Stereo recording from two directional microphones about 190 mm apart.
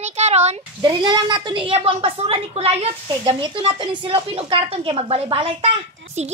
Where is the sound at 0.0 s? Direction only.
35° right (ahead or behind).